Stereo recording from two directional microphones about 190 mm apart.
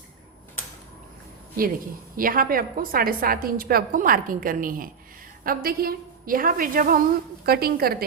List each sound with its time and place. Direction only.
2.1 s a woman's voice: 45° right (ahead or behind)